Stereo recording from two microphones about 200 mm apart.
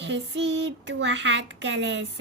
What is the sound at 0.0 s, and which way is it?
Speech, 60° right (ahead or behind).